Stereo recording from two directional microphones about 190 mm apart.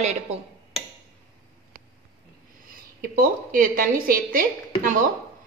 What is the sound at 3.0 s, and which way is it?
A woman's voice, 50° right (ahead or behind).